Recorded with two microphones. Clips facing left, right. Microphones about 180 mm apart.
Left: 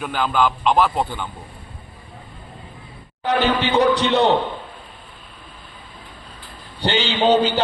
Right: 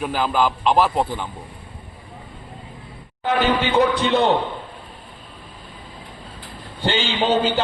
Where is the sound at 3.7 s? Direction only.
55° right (ahead or behind).